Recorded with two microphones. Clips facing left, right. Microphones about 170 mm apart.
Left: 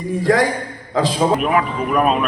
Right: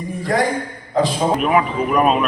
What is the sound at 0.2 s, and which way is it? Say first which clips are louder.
Speech: left 4 dB; 90° left.